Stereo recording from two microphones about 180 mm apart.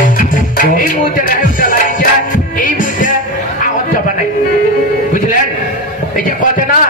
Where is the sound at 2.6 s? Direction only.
45° left (ahead or behind).